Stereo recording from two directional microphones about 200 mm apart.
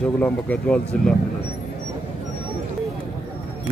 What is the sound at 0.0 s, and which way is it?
A man's voice, 5° left (ahead or behind).